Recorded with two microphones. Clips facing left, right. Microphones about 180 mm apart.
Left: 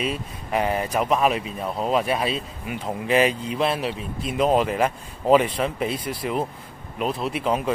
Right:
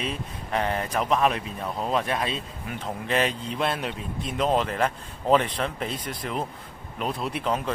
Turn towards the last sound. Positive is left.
turn(degrees=10)  # may be behind; listen again after turning